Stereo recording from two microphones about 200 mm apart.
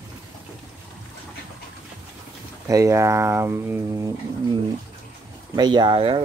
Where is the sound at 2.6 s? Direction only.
15° right (ahead or behind).